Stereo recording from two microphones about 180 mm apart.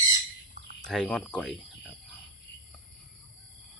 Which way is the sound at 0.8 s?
5° left (ahead or behind).